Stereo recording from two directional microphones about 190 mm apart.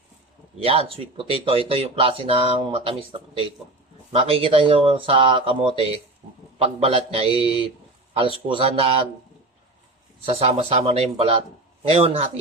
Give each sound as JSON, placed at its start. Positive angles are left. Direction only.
{"t": 0.6, "sound": "speech", "side_deg": -30}
{"t": 10.2, "sound": "speech", "side_deg": -30}